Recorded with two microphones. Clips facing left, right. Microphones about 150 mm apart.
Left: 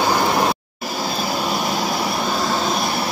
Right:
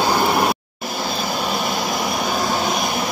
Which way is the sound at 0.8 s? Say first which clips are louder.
Left 2 dB; 10° left (ahead or behind).